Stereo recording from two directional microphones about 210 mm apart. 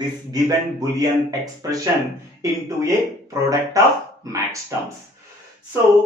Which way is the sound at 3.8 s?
15° right (ahead or behind).